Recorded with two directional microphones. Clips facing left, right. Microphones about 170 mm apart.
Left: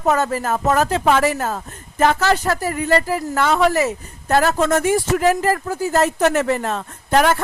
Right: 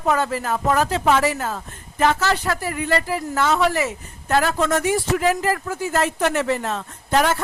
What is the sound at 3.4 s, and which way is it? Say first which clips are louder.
A man's voice: left 3 dB; 55° left (ahead or behind).